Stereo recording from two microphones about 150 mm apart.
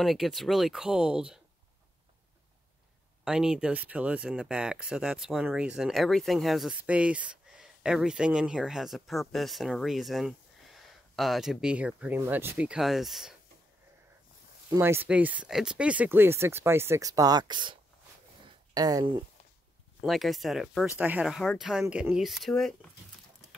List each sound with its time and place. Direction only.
0.0 s speech: centre (ahead or behind)
3.3 s speech: 5° right (ahead or behind)
14.8 s speech: 15° right (ahead or behind)
20.0 s speech: centre (ahead or behind)